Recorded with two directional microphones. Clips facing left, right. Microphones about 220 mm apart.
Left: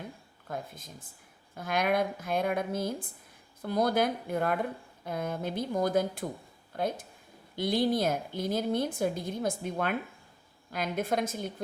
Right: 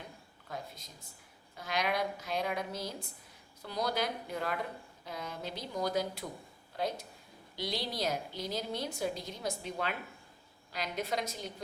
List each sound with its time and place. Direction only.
0.4 s a woman's voice: 50° left (ahead or behind)